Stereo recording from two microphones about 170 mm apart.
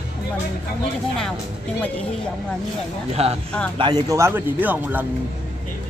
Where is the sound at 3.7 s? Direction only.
25° right (ahead or behind); by 5.0 s 10° right (ahead or behind).